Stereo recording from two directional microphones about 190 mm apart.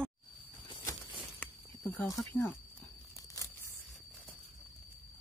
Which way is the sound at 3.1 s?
15° left (ahead or behind).